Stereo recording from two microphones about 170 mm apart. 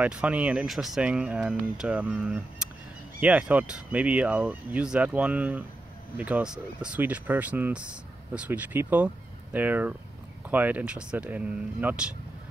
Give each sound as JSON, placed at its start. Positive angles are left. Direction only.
{"t": 0.0, "sound": "speech", "side_deg": -5}